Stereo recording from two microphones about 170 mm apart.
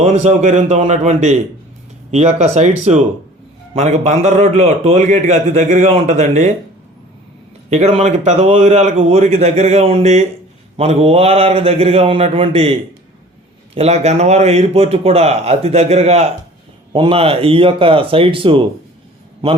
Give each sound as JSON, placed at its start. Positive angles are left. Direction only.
{"t": 0.0, "sound": "a man's voice", "side_deg": -40}
{"t": 7.7, "sound": "a man's voice", "side_deg": -40}